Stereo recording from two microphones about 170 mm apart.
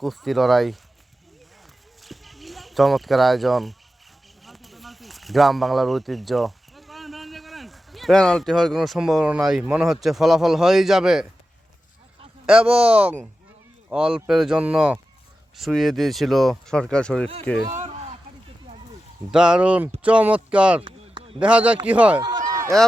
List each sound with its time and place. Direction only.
0.0 s speech: centre (ahead or behind)
2.0 s a sound: centre (ahead or behind)
4.4 s speech: centre (ahead or behind)
12.5 s speech: 5° right (ahead or behind)
19.3 s speech: 5° right (ahead or behind)
20.8 s a sound: 30° right (ahead or behind)
21.3 s speech: 5° right (ahead or behind)
22.2 s run: 25° right (ahead or behind)